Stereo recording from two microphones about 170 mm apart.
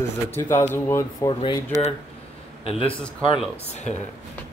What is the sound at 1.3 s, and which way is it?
Speech, 30° left (ahead or behind).